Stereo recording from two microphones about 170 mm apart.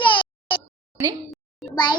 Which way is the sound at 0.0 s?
30° left (ahead or behind).